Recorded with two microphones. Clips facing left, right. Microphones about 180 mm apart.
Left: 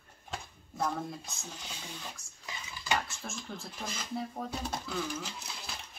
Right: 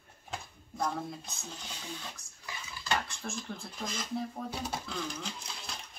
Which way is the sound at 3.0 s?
Centre (ahead or behind).